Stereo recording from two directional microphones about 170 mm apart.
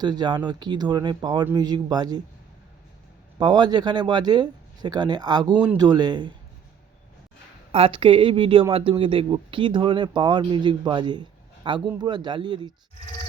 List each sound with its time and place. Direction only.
0.0 s speech: 25° right (ahead or behind)
3.3 s speech: 25° right (ahead or behind)
7.7 s a woman's voice: 30° right (ahead or behind)